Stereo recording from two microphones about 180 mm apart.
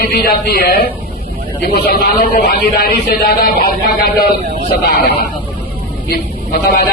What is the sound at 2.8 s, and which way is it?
Speech, 55° left (ahead or behind).